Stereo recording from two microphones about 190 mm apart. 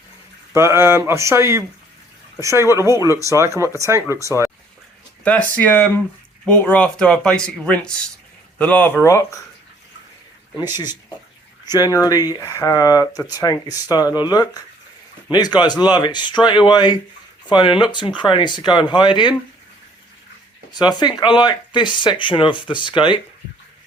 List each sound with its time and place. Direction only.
0.5 s speech: 15° right (ahead or behind)
2.7 s speech: 15° right (ahead or behind)
5.2 s speech: 5° left (ahead or behind)
10.6 s speech: 20° left (ahead or behind)
20.7 s speech: 20° left (ahead or behind)